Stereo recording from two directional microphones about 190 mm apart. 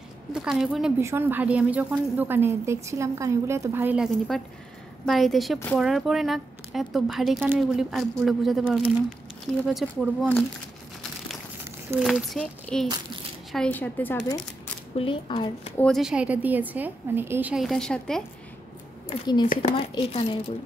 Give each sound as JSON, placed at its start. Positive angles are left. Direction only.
{"t": 0.3, "sound": "a woman's voice", "side_deg": 0}
{"t": 12.0, "sound": "speech", "side_deg": 0}
{"t": 15.0, "sound": "a woman's voice", "side_deg": 30}
{"t": 15.8, "sound": "a woman's voice", "side_deg": 0}
{"t": 19.0, "sound": "a woman's voice", "side_deg": 25}